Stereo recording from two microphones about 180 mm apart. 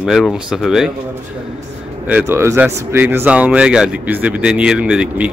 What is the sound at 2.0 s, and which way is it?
Speech, 10° right (ahead or behind).